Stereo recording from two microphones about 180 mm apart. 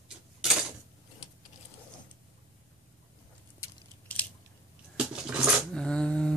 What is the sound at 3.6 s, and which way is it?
Biting, 10° left (ahead or behind).